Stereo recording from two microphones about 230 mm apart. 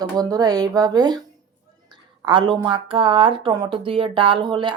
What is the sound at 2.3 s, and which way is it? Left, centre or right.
A woman's voice, centre.